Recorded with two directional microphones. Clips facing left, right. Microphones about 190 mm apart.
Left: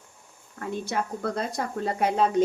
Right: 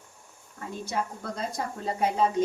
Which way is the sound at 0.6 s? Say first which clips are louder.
Left 3 dB; 60° left (ahead or behind).